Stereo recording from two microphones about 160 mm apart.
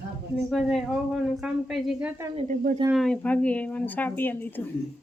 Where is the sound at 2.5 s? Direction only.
55° right (ahead or behind).